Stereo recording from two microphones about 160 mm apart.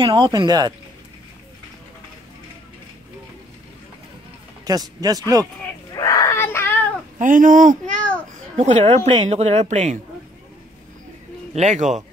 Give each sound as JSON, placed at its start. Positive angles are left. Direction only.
{"t": 0.0, "sound": "speech", "side_deg": -30}
{"t": 4.6, "sound": "speech", "side_deg": -25}
{"t": 5.9, "sound": "a sound", "side_deg": 20}
{"t": 7.2, "sound": "speech", "side_deg": -55}
{"t": 11.5, "sound": "speech", "side_deg": -45}